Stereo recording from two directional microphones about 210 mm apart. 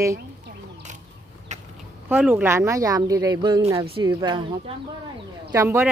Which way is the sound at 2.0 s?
5° right (ahead or behind).